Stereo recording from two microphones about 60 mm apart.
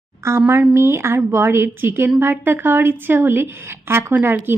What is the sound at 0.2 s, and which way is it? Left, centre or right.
A woman's voice, right.